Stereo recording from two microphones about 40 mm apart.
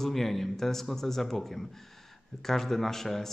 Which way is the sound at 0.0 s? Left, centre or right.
Centre.